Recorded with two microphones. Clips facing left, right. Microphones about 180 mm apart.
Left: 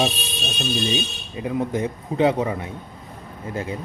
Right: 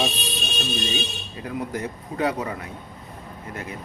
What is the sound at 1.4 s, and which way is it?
Speech, 20° left (ahead or behind).